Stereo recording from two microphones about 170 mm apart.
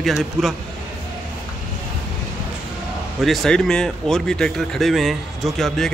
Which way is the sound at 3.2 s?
Centre (ahead or behind).